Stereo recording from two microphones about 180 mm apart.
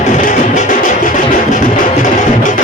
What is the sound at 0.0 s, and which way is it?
Music, 45° left (ahead or behind).